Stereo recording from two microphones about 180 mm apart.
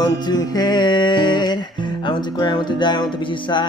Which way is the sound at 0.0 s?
20° left (ahead or behind).